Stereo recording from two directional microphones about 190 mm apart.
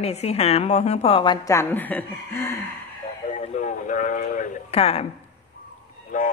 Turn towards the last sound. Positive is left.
turn(degrees=40)  # may be behind; listen again after turning